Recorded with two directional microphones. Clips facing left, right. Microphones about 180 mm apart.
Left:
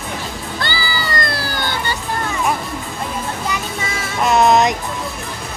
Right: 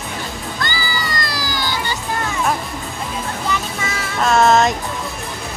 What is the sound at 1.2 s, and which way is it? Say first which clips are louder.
Music: left 2 dB; 60° left (ahead or behind).